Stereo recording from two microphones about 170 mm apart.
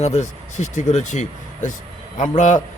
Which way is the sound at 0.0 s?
40° left (ahead or behind).